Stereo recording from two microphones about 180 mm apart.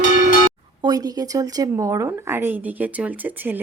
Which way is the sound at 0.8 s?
20° right (ahead or behind).